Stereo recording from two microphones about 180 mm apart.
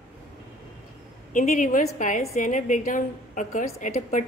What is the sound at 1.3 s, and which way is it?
A woman's voice, 45° left (ahead or behind).